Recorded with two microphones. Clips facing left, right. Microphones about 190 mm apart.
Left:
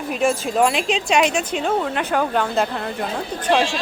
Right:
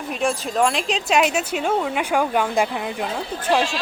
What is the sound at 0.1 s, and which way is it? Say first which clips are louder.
Speech: left 3 dB; centre (ahead or behind).